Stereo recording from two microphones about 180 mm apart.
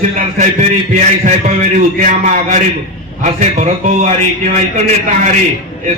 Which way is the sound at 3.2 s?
40° right (ahead or behind).